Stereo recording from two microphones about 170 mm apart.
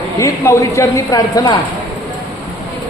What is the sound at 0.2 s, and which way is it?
A man's voice, 20° left (ahead or behind).